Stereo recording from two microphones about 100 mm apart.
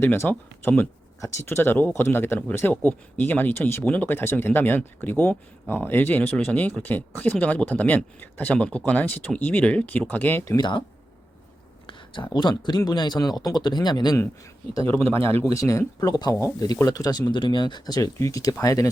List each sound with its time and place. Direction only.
0.0 s speech: 25° left (ahead or behind)
10.6 s speech: 55° left (ahead or behind)
11.9 s speech: 55° left (ahead or behind)
14.8 s speech: 20° left (ahead or behind)
15.5 s speech: 35° left (ahead or behind)